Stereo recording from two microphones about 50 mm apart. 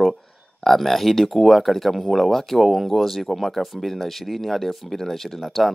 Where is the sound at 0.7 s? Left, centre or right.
Centre.